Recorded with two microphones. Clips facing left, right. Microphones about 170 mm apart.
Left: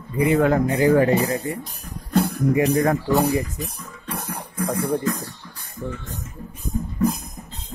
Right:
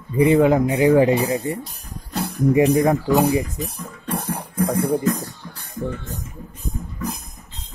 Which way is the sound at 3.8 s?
30° right (ahead or behind).